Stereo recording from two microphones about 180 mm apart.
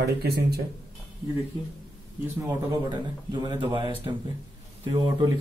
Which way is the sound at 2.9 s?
25° right (ahead or behind).